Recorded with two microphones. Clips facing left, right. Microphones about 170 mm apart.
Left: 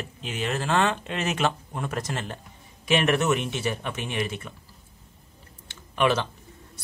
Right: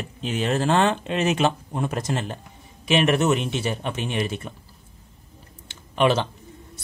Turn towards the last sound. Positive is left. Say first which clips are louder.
# right 3 dB
turn(degrees=-25)  # may be behind; listen again after turning